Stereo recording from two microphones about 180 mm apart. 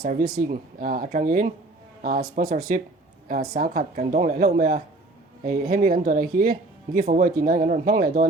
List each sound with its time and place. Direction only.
0.0 s speech: 50° right (ahead or behind)
4.1 s speech: 40° right (ahead or behind)